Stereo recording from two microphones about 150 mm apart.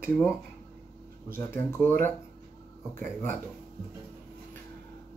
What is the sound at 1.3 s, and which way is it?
Speech, 15° left (ahead or behind).